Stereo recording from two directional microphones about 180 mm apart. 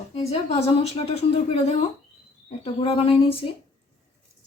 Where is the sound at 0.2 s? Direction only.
35° left (ahead or behind).